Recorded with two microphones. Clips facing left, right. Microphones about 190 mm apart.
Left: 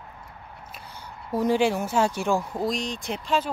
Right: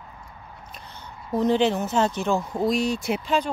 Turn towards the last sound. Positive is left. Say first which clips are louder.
# right 2 dB
turn(degrees=0)  # may be behind; listen again after turning